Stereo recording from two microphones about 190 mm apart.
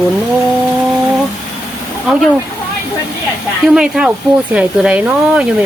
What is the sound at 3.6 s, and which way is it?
Speech, 5° right (ahead or behind).